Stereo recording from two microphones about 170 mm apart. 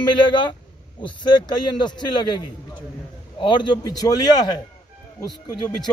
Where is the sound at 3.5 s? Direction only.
25° left (ahead or behind).